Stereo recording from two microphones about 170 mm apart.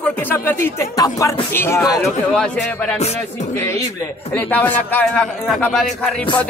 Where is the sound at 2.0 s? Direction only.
Centre (ahead or behind).